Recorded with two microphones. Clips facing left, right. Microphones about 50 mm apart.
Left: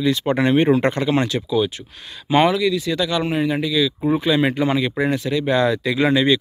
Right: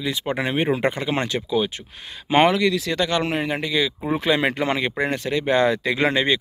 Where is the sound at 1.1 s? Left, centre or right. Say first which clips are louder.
Left 3 dB; right.